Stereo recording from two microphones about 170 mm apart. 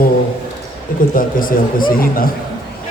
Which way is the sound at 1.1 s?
55° left (ahead or behind).